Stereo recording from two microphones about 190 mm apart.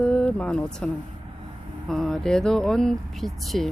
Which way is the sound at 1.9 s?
Centre (ahead or behind).